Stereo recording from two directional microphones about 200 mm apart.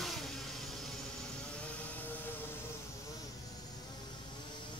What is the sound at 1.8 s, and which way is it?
Train, 10° left (ahead or behind).